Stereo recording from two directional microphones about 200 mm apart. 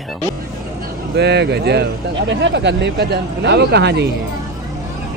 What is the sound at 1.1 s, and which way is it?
Speech, 55° right (ahead or behind).